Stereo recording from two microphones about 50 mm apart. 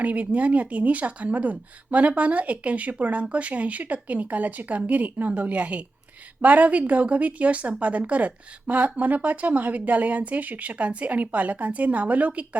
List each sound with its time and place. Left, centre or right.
0.0 s speech: right